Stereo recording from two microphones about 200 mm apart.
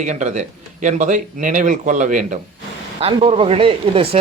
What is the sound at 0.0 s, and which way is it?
Speech, 35° right (ahead or behind).